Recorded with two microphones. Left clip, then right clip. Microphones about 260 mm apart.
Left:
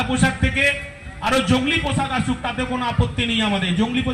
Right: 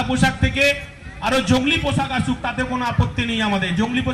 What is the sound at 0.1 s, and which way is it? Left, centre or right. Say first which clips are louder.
A man's voice: right 1 dB; right.